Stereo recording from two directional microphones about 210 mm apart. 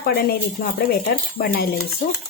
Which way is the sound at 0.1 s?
45° left (ahead or behind).